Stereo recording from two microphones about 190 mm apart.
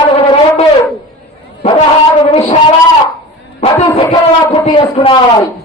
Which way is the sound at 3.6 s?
25° left (ahead or behind).